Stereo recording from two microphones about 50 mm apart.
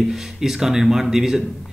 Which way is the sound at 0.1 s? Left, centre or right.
Centre.